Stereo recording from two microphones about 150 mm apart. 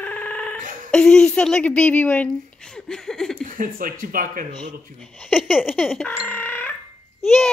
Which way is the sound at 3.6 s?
70° right (ahead or behind).